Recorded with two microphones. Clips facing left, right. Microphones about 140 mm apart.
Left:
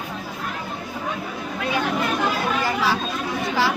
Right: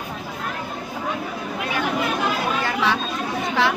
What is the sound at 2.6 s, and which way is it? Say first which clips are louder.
Chatter: even; 5° left (ahead or behind).